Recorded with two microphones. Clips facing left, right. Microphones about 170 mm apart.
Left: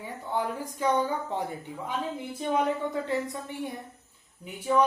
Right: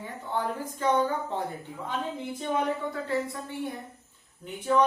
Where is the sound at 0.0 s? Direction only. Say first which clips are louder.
Left 1 dB; 10° left (ahead or behind).